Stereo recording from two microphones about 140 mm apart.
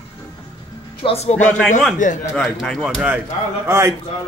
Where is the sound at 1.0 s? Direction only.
45° left (ahead or behind).